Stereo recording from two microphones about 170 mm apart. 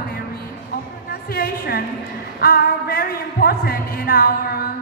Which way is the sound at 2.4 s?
65° left (ahead or behind).